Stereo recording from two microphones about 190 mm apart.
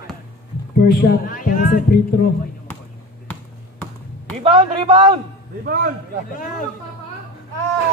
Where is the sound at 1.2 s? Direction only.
45° left (ahead or behind).